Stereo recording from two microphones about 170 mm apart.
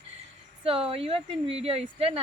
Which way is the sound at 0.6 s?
35° right (ahead or behind).